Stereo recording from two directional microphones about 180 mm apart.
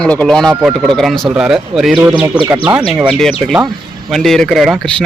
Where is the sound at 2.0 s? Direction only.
15° right (ahead or behind).